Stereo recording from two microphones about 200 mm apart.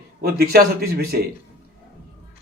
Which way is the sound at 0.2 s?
50° right (ahead or behind).